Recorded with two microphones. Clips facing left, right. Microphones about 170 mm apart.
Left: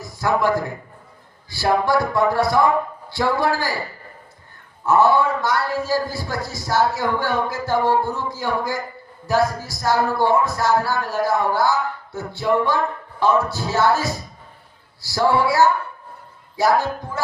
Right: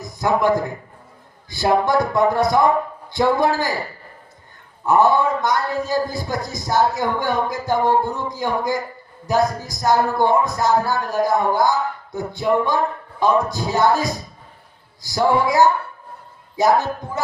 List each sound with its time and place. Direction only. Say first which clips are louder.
0.0 s a sound: right 1 dB; 20° right (ahead or behind)
1.5 s speech: right 1 dB; 20° right (ahead or behind)
4.9 s speech: even; 15° right (ahead or behind)